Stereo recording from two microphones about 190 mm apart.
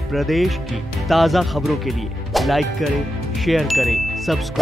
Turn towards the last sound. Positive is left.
turn(degrees=0)  # may be behind; listen again after turning